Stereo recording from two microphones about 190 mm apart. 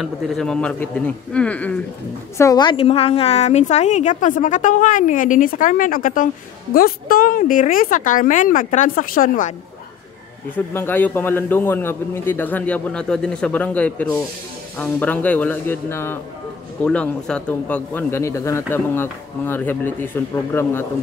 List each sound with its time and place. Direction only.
0.0 s a man's voice: centre (ahead or behind)
2.3 s a woman's voice: 20° left (ahead or behind); by 9.5 s 45° left (ahead or behind)
10.5 s a man's voice: 10° left (ahead or behind)